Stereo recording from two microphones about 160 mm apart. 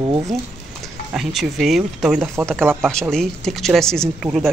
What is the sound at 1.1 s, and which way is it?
Speech, centre (ahead or behind).